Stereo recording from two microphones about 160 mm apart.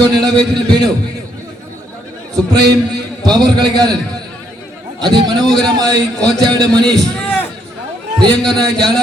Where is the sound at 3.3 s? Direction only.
25° right (ahead or behind).